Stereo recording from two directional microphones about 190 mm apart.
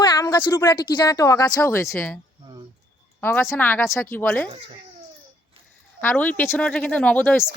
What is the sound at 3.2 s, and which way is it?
Speech, 10° left (ahead or behind).